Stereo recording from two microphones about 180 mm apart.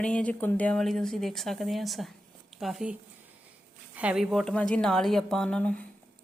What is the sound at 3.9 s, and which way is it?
A woman's voice, 5° right (ahead or behind).